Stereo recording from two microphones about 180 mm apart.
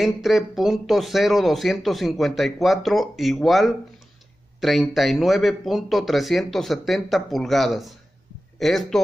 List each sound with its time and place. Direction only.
0.0 s speech: centre (ahead or behind)